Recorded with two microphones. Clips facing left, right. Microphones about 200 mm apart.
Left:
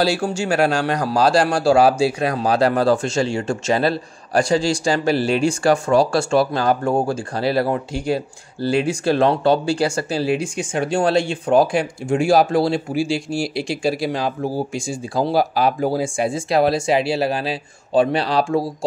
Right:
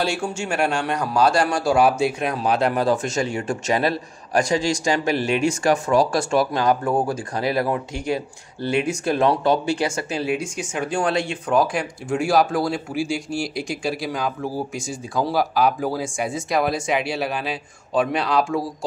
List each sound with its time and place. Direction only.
0.0 s speech: 35° left (ahead or behind)